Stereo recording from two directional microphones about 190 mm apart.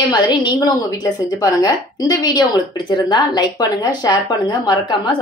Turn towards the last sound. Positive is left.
turn(degrees=25)  # may be behind; listen again after turning